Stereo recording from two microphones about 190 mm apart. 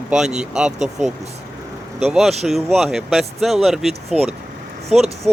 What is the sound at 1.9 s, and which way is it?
Speech, 5° right (ahead or behind).